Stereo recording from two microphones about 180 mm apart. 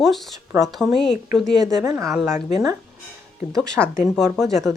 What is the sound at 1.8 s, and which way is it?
Speech, 15° right (ahead or behind).